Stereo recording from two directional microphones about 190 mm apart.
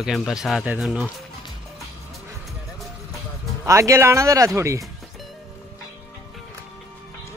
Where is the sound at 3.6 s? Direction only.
15° right (ahead or behind).